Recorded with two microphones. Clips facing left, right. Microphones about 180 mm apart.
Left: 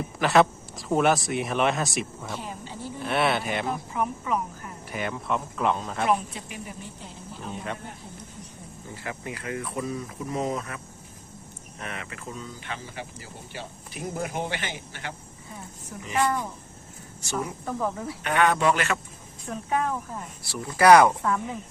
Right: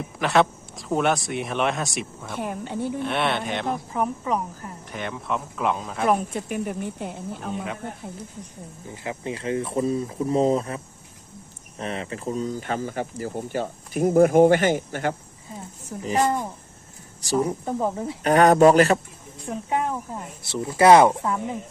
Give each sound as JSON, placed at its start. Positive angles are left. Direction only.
{"t": 0.2, "sound": "speech", "side_deg": 0}
{"t": 2.3, "sound": "speech", "side_deg": -60}
{"t": 3.0, "sound": "speech", "side_deg": 5}
{"t": 3.9, "sound": "speech", "side_deg": -35}
{"t": 4.9, "sound": "speech", "side_deg": 5}
{"t": 6.1, "sound": "speech", "side_deg": -50}
{"t": 9.0, "sound": "speech", "side_deg": -25}
{"t": 11.8, "sound": "speech", "side_deg": -30}
{"t": 17.2, "sound": "speech", "side_deg": -35}
{"t": 18.2, "sound": "speech", "side_deg": -40}
{"t": 19.5, "sound": "speech", "side_deg": -20}